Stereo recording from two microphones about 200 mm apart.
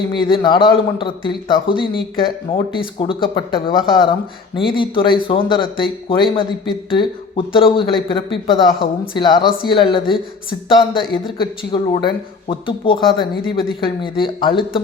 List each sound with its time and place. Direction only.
0.1 s speech: 25° left (ahead or behind)